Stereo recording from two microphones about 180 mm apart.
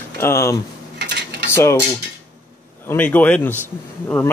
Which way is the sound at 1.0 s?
65° right (ahead or behind).